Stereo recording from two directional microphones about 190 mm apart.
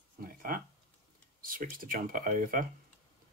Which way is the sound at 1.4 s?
45° right (ahead or behind).